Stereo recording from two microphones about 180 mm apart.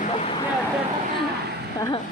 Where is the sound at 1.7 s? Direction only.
20° left (ahead or behind).